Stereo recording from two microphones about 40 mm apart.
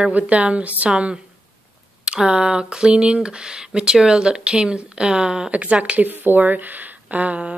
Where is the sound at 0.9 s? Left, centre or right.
Right.